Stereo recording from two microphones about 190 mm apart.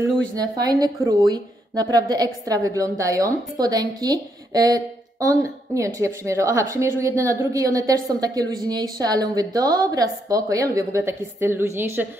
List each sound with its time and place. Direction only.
0.4 s a woman's voice: 20° right (ahead or behind)